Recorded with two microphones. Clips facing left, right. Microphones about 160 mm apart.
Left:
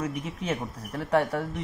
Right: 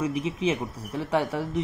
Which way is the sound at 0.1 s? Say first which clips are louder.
Right 6 dB; 90° right.